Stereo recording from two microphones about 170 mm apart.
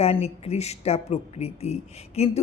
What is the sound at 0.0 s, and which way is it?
Speech, 35° left (ahead or behind).